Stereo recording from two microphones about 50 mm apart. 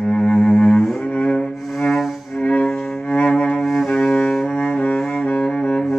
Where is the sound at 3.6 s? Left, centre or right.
Centre.